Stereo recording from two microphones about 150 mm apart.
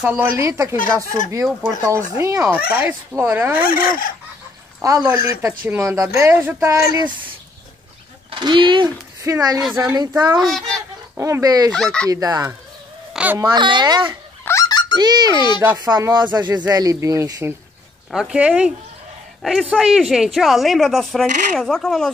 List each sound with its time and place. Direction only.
0.0 s speech: 15° right (ahead or behind)
1.8 s speech: 20° right (ahead or behind)
3.5 s fowl: 70° left (ahead or behind)
4.8 s speech: 20° right (ahead or behind)
7.0 s speech: 30° right (ahead or behind)
11.7 s speech: 5° left (ahead or behind)
12.1 s speech: 25° right (ahead or behind)
13.1 s a sound: 10° right (ahead or behind)
13.4 s speech: 30° right (ahead or behind)
14.4 s a sound: 20° left (ahead or behind)
15.0 s speech: 30° right (ahead or behind)
15.3 s speech: 30° left (ahead or behind)
15.6 s speech: 25° right (ahead or behind)
18.1 s speech: 5° right (ahead or behind)